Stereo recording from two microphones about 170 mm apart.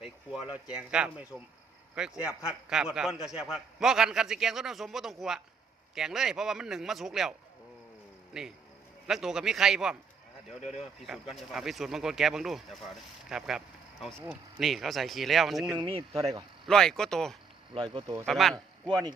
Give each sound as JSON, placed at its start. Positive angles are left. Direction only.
{"t": 0.7, "sound": "speech", "side_deg": -5}
{"t": 11.0, "sound": "speech", "side_deg": -5}
{"t": 14.6, "sound": "speech", "side_deg": 0}
{"t": 15.8, "sound": "speech", "side_deg": -35}
{"t": 16.6, "sound": "speech", "side_deg": 5}
{"t": 17.7, "sound": "speech", "side_deg": -30}
{"t": 18.3, "sound": "speech", "side_deg": 0}
{"t": 18.5, "sound": "a man's voice", "side_deg": -25}